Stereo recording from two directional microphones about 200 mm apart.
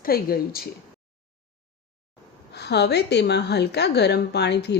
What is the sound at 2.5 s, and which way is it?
A woman's voice, 55° left (ahead or behind).